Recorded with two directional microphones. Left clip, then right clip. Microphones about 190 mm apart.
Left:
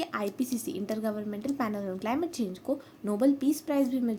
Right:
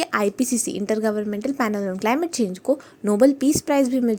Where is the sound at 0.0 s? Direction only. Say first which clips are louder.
Right 10 dB; 45° right (ahead or behind).